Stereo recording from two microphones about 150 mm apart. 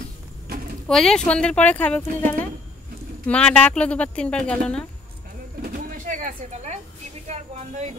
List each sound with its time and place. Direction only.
0.8 s a woman's voice: 5° left (ahead or behind)
5.6 s pigeon: 65° right (ahead or behind)
7.2 s speech: 45° right (ahead or behind)